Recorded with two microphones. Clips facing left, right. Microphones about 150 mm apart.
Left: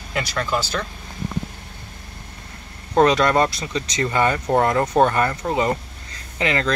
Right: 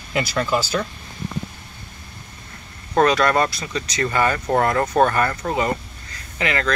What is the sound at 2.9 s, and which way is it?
Speech, 20° left (ahead or behind).